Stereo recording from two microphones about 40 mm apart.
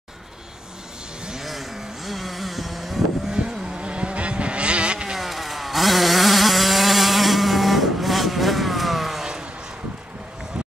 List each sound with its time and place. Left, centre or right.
1.4 s vehicle: centre
3.6 s vehicle: right
5.1 s chainsaw: centre